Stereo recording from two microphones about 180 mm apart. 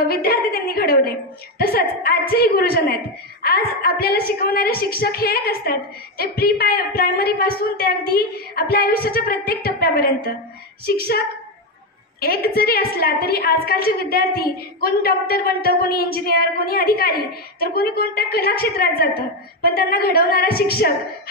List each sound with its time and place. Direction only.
0.0 s a woman's voice: 60° left (ahead or behind)